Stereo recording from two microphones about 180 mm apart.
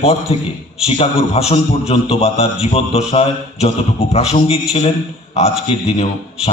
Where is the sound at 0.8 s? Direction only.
35° left (ahead or behind).